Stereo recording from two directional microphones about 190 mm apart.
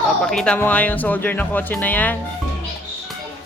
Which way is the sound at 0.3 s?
5° left (ahead or behind).